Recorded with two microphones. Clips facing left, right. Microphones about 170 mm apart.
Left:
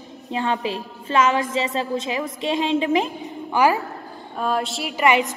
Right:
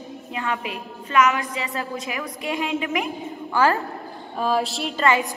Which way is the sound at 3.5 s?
15° left (ahead or behind).